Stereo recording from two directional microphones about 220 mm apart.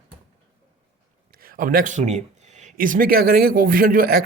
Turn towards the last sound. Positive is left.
turn(degrees=-45)  # may be behind; listen again after turning